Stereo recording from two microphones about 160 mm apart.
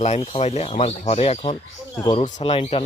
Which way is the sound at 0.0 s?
45° left (ahead or behind).